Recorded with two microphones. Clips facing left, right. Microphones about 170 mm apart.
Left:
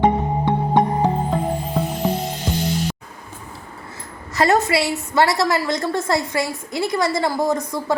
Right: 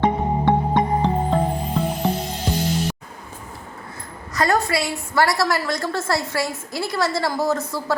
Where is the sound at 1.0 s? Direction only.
10° left (ahead or behind).